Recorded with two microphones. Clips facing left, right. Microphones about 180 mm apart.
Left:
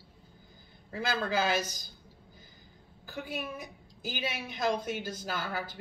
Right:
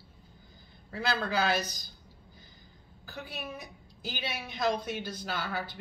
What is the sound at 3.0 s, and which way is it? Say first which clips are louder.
A woman's voice: left 3 dB; 50° left (ahead or behind).